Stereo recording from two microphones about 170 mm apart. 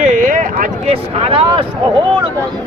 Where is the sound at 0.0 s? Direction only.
50° right (ahead or behind).